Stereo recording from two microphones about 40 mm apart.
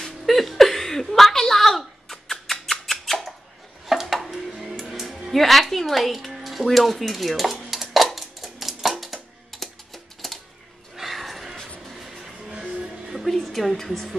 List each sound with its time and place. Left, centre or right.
0.0 s a sound: centre
4.5 s speech: centre
7.7 s typewriter: centre
10.2 s a sound: centre
11.9 s music: centre
12.5 s music: right
13.3 s a woman's voice: centre